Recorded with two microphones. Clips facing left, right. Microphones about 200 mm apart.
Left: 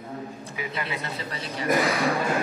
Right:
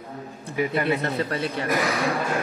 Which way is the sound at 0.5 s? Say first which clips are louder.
Right 11 dB; 55° right (ahead or behind).